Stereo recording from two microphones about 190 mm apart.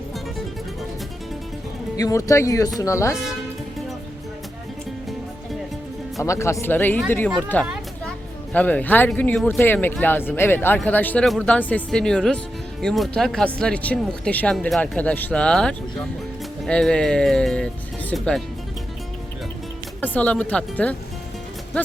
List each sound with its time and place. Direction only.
2.0 s speech: 20° left (ahead or behind)
6.2 s speech: 15° left (ahead or behind)
20.0 s speech: 5° left (ahead or behind)